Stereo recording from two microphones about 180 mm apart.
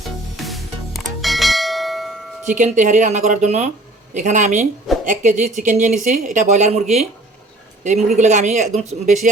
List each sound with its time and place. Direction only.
0.3 s church bell: centre (ahead or behind)
2.6 s speech: 45° right (ahead or behind)